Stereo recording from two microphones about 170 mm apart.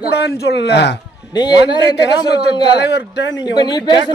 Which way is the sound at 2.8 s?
85° left.